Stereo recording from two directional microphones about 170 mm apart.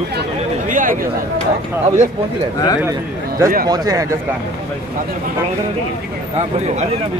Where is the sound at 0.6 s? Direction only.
50° right (ahead or behind).